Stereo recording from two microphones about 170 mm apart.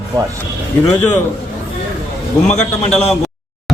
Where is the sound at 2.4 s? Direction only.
45° left (ahead or behind).